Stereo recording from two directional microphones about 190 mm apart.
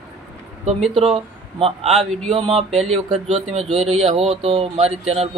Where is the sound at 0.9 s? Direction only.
30° right (ahead or behind).